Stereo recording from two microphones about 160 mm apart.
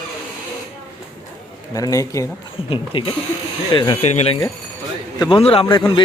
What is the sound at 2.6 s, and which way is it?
A man's voice, 30° left (ahead or behind).